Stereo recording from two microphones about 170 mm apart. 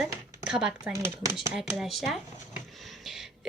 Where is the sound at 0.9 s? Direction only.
15° right (ahead or behind).